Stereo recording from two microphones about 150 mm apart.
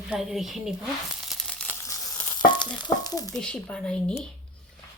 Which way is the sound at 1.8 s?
30° left (ahead or behind).